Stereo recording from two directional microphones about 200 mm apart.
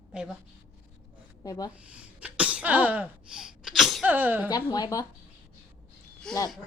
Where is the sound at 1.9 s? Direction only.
5° right (ahead or behind).